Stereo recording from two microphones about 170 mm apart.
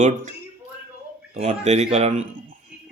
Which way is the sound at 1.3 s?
40° right (ahead or behind).